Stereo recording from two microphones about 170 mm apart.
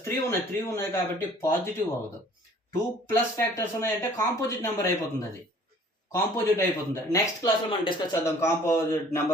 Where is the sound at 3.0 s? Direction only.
15° left (ahead or behind).